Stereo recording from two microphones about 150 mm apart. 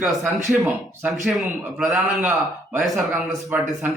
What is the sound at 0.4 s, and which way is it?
Speech, 15° right (ahead or behind).